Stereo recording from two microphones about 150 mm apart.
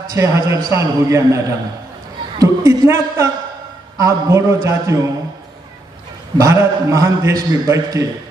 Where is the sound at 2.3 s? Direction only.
20° right (ahead or behind).